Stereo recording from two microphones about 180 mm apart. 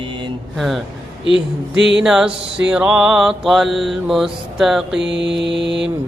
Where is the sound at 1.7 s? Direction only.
85° right.